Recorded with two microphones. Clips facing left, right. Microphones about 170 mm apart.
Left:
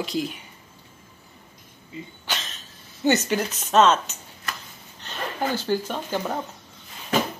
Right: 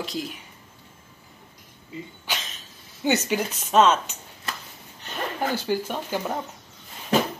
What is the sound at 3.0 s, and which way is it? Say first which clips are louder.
Speech: left 2 dB; 10° right (ahead or behind).